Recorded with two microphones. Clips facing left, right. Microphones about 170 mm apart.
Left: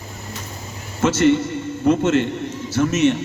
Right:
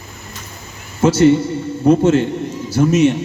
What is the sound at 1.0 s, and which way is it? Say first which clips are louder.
A man's voice: right 4 dB; 35° right (ahead or behind).